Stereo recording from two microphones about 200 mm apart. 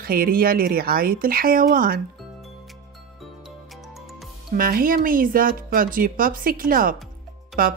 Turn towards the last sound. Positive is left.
turn(degrees=-45)  # may be behind; listen again after turning